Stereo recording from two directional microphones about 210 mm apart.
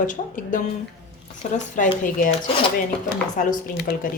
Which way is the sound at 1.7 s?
35° left (ahead or behind).